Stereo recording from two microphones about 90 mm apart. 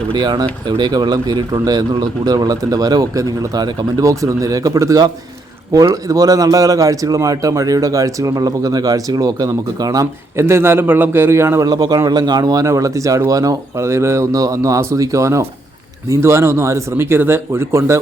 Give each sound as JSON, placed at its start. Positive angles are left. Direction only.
{"t": 0.1, "sound": "a man's voice", "side_deg": -50}
{"t": 4.0, "sound": "a man's voice", "side_deg": -35}
{"t": 10.3, "sound": "speech", "side_deg": -30}
{"t": 11.6, "sound": "a man's voice", "side_deg": -45}
{"t": 12.6, "sound": "speech", "side_deg": -35}